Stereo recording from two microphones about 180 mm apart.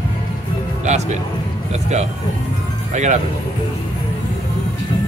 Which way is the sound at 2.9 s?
40° right (ahead or behind).